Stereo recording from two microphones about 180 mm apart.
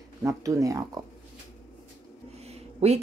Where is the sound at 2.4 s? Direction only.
35° right (ahead or behind).